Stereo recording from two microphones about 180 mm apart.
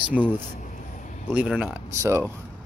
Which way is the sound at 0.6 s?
45° left (ahead or behind).